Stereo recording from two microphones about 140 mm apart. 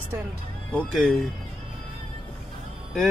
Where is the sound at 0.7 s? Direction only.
5° left (ahead or behind).